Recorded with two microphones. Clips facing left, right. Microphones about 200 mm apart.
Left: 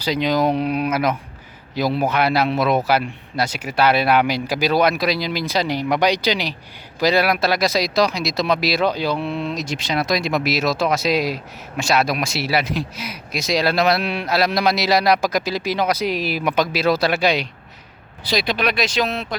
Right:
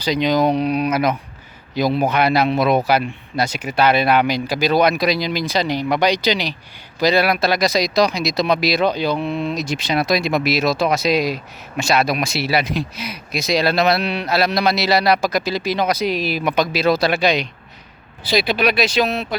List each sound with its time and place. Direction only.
0.0 s a man's voice: 5° left (ahead or behind)
9.1 s speech: 5° right (ahead or behind)
9.6 s speech: 60° right (ahead or behind)
9.9 s a man's voice: 10° right (ahead or behind); by 17.5 s 10° left (ahead or behind)
18.3 s speech: 5° right (ahead or behind)